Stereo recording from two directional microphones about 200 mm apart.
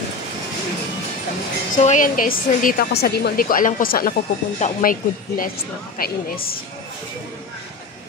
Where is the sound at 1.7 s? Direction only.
40° left (ahead or behind).